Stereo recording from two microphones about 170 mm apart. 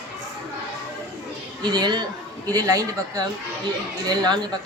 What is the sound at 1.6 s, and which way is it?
A man's voice, 25° right (ahead or behind).